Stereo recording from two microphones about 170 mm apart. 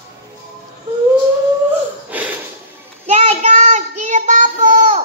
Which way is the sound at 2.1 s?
10° right (ahead or behind).